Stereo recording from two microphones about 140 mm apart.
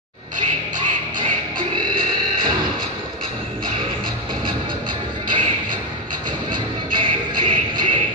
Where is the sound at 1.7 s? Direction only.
35° right (ahead or behind).